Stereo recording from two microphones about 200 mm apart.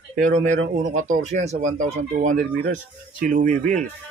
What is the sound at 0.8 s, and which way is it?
Speech, 40° right (ahead or behind).